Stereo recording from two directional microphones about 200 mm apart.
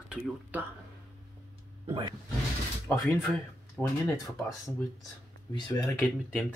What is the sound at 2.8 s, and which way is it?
Speech, 10° left (ahead or behind).